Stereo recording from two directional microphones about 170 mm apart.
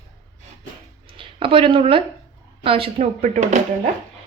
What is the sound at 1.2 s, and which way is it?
Speech, 30° right (ahead or behind).